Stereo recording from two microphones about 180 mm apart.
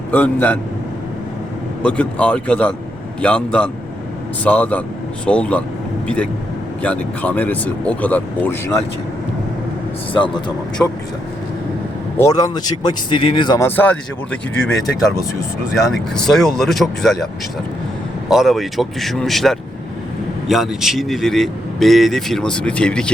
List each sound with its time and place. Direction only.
0.1 s speech: 10° left (ahead or behind)
1.8 s speech: 5° left (ahead or behind)
6.8 s speech: 10° left (ahead or behind)
10.8 s a man's voice: 5° left (ahead or behind)
12.1 s speech: 20° left (ahead or behind)
13.7 s speech: 10° left (ahead or behind)
16.1 s a man's voice: centre (ahead or behind)
18.3 s a man's voice: centre (ahead or behind)